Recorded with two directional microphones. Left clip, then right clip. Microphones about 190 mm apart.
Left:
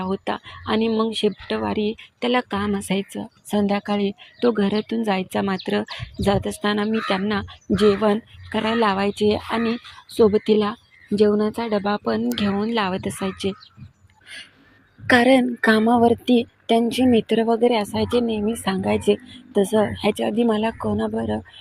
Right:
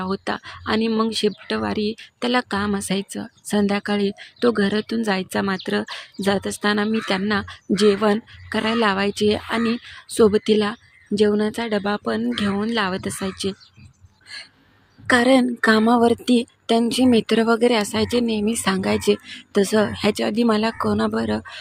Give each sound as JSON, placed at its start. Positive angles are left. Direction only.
{"t": 0.0, "sound": "speech", "side_deg": -15}
{"t": 15.0, "sound": "a woman's voice", "side_deg": 0}